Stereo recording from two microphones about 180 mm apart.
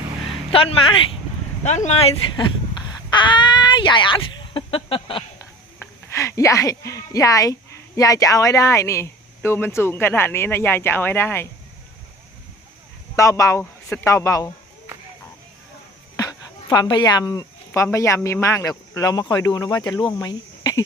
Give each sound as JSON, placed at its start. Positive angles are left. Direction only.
{"t": 0.5, "sound": "speech", "side_deg": 30}
{"t": 5.8, "sound": "speech", "side_deg": 15}
{"t": 13.1, "sound": "speech", "side_deg": 15}
{"t": 16.1, "sound": "speech", "side_deg": 20}